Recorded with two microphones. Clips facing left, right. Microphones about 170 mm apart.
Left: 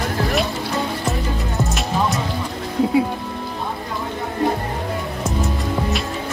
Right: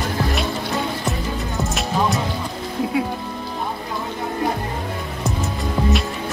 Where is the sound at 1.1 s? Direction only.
Centre (ahead or behind).